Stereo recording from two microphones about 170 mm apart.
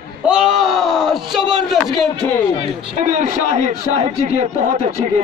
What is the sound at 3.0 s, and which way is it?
A man's voice, 45° right (ahead or behind).